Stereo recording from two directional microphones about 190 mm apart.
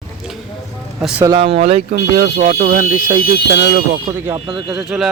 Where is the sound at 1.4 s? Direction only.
30° right (ahead or behind).